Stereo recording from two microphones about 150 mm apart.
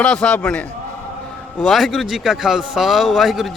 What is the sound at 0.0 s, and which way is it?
Speech, 5° left (ahead or behind).